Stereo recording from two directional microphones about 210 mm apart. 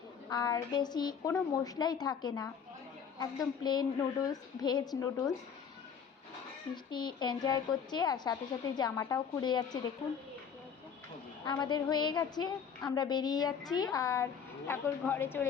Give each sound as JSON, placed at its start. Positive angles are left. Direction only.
{"t": 0.3, "sound": "speech", "side_deg": 20}
{"t": 6.9, "sound": "speech", "side_deg": 20}
{"t": 11.4, "sound": "a woman's voice", "side_deg": 20}